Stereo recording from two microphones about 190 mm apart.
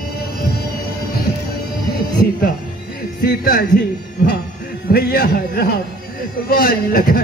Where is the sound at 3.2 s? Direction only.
55° left (ahead or behind).